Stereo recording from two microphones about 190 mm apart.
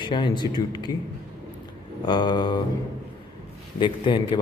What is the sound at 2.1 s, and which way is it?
Speech, 25° left (ahead or behind).